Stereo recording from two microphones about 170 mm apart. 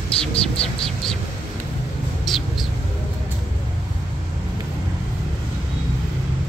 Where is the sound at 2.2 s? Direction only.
Centre (ahead or behind).